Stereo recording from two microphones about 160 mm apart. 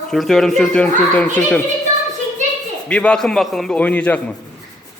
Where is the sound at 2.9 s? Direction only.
5° left (ahead or behind).